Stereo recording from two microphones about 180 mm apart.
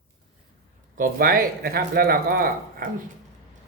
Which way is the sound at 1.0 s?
55° right (ahead or behind).